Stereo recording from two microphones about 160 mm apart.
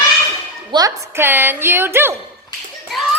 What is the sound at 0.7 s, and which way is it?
Speech, 30° right (ahead or behind).